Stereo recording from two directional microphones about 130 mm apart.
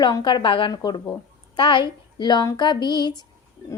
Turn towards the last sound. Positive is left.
turn(degrees=35)  # may be behind; listen again after turning